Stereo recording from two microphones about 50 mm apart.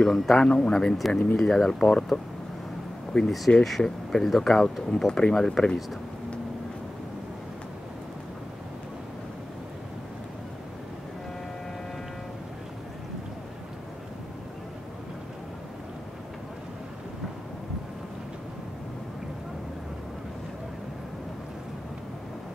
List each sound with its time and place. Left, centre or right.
0.0 s speech: centre
3.1 s speech: centre